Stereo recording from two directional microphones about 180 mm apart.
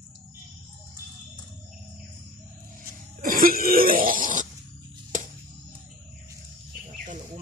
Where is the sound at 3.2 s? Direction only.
50° right (ahead or behind).